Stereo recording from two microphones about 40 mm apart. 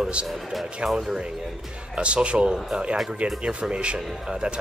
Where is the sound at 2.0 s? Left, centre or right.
Right.